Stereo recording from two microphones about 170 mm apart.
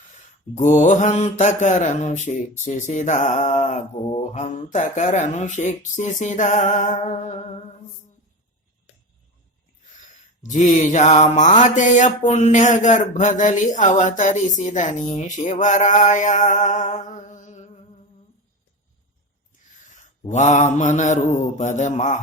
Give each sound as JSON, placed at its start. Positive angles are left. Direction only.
{"t": 0.5, "sound": "mantra", "side_deg": 45}
{"t": 10.5, "sound": "mantra", "side_deg": 45}
{"t": 20.0, "sound": "mantra", "side_deg": 45}